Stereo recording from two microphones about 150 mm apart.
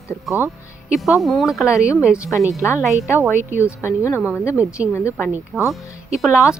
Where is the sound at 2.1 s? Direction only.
20° left (ahead or behind).